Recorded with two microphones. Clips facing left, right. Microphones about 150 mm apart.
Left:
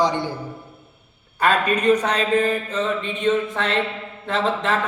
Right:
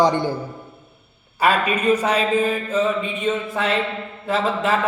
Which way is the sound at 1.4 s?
5° right (ahead or behind).